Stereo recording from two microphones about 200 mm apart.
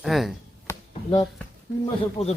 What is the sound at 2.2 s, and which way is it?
Speech, 30° left (ahead or behind).